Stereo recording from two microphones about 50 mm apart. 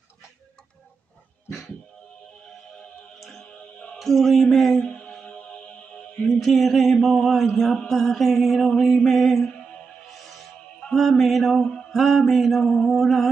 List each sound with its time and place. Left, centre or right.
3.2 s music: centre
4.0 s mantra: centre
4.8 s music: centre
6.2 s mantra: centre
10.1 s music: centre
10.9 s mantra: centre